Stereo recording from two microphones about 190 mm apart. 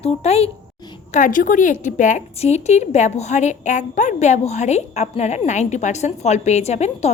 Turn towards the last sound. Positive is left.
turn(degrees=35)  # may be behind; listen again after turning